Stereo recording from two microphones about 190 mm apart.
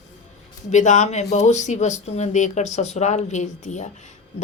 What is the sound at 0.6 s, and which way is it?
Speech, 40° left (ahead or behind).